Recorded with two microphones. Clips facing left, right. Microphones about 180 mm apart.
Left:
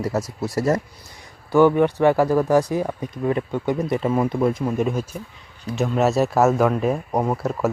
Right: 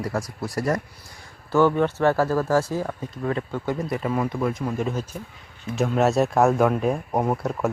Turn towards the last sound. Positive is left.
turn(degrees=0)  # may be behind; listen again after turning